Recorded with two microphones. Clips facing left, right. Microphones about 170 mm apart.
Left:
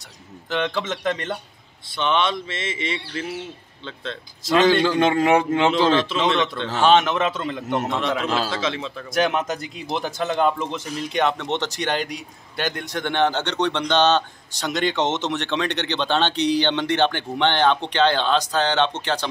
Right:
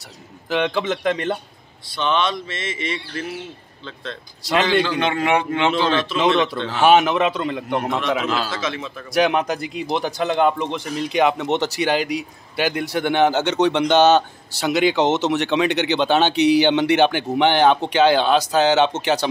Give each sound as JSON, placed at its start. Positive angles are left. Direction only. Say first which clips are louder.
{"t": 0.5, "sound": "a man's voice", "louder": "right 4 dB", "side_deg": -5}
{"t": 2.0, "sound": "speech", "louder": "right 1 dB", "side_deg": 25}
{"t": 4.8, "sound": "a man's voice", "louder": "left 3 dB", "side_deg": 40}
{"t": 5.8, "sound": "speech", "louder": "left 2 dB", "side_deg": 30}
{"t": 6.1, "sound": "a man's voice", "louder": "right 3 dB", "side_deg": -5}
{"t": 8.3, "sound": "speech", "louder": "even", "side_deg": 30}
{"t": 9.1, "sound": "speech", "louder": "right 3 dB", "side_deg": 0}